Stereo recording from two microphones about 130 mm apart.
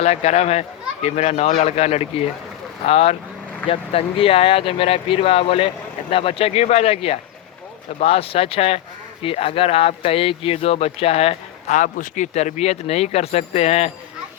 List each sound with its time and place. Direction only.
0.0 s speech: 55° left (ahead or behind)
11.8 s speech: 75° left (ahead or behind); by 13.9 s 55° left (ahead or behind)